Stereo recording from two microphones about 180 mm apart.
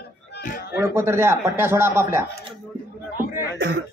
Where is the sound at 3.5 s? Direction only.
70° right (ahead or behind).